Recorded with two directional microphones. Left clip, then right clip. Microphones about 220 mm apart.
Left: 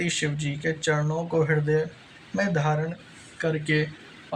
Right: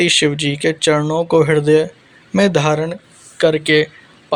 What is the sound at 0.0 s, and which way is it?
Speech, 35° right (ahead or behind).